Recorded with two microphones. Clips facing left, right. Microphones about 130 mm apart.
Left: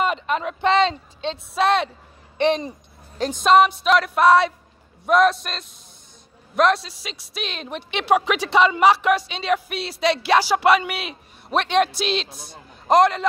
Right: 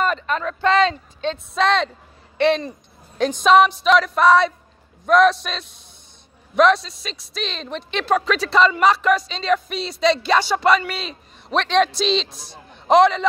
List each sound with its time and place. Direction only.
0.0 s speech: 15° left (ahead or behind)
1.5 s speech: 10° left (ahead or behind)
3.2 s a woman's voice: centre (ahead or behind)
12.3 s a man's voice: 55° left (ahead or behind)
12.8 s a woman's voice: 5° left (ahead or behind)